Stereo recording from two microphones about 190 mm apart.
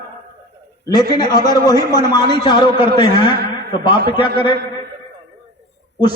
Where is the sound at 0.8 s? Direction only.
20° left (ahead or behind).